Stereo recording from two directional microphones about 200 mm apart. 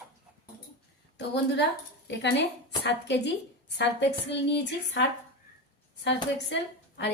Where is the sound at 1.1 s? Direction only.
60° left (ahead or behind).